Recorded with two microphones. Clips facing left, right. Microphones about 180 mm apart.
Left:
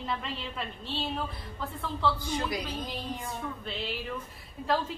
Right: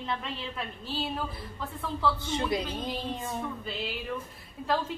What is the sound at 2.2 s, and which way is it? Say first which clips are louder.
Speech: right 3 dB; 25° right (ahead or behind).